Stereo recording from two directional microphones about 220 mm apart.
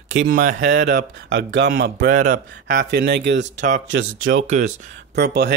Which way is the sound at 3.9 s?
55° right (ahead or behind).